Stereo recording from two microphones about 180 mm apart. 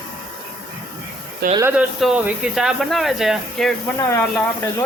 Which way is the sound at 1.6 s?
10° right (ahead or behind).